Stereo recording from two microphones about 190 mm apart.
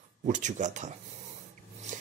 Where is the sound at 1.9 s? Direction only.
40° right (ahead or behind).